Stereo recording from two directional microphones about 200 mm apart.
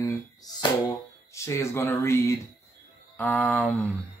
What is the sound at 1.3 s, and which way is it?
Speech, 15° left (ahead or behind).